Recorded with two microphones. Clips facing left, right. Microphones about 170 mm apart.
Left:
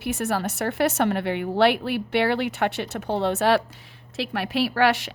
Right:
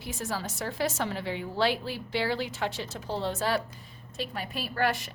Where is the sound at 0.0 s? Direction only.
70° left (ahead or behind).